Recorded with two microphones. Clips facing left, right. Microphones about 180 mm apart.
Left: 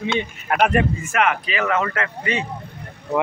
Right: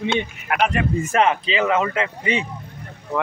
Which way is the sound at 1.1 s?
30° right (ahead or behind).